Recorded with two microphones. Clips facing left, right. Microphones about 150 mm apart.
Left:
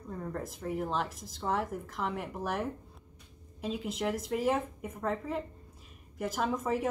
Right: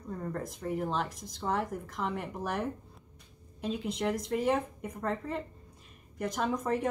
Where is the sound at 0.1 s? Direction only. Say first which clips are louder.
Right 1 dB; centre (ahead or behind).